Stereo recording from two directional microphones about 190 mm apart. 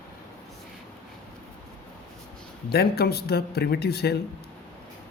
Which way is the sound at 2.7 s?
55° left (ahead or behind).